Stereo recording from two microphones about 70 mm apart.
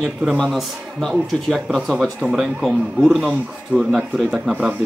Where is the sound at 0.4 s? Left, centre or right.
Centre.